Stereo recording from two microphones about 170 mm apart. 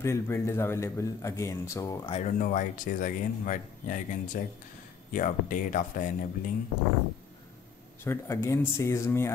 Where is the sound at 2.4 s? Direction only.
50° left (ahead or behind).